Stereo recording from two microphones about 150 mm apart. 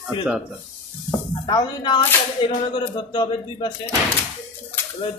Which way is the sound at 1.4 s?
30° left (ahead or behind).